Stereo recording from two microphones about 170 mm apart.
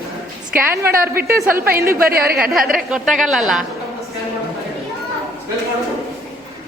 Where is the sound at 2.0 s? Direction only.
60° right (ahead or behind).